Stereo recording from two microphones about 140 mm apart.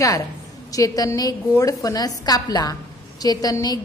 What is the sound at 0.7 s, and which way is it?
A woman's voice, 25° left (ahead or behind).